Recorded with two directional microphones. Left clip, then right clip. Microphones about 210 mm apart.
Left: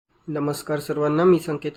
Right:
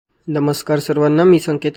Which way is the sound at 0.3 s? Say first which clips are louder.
Right 8 dB; 30° right (ahead or behind).